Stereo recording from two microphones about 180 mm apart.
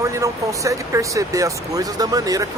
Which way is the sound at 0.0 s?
15° right (ahead or behind).